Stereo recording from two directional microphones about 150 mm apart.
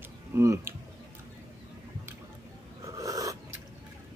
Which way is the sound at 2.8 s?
25° right (ahead or behind).